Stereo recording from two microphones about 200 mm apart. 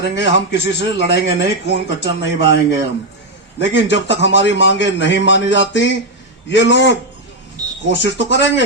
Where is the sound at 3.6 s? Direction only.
60° left (ahead or behind).